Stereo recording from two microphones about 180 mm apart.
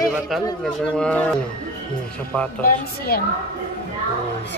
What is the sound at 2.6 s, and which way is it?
Speech, 55° left (ahead or behind).